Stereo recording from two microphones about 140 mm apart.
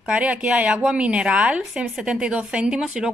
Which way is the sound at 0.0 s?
10° right (ahead or behind).